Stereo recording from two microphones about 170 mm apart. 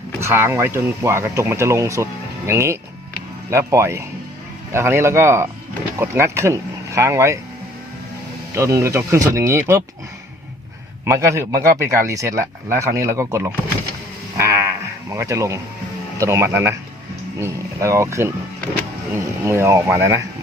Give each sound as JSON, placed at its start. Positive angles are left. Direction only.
{"t": 0.2, "sound": "speech", "side_deg": -15}
{"t": 8.5, "sound": "speech", "side_deg": -15}
{"t": 11.0, "sound": "speech", "side_deg": -15}
{"t": 14.3, "sound": "a sound", "side_deg": -15}
{"t": 16.1, "sound": "speech", "side_deg": -15}